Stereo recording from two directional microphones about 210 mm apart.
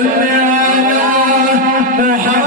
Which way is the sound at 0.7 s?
40° right (ahead or behind).